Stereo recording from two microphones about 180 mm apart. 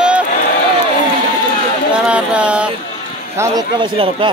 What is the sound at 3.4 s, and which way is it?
Speech, 25° right (ahead or behind).